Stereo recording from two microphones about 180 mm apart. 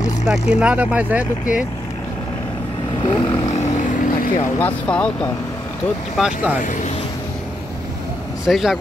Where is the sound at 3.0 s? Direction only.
30° left (ahead or behind).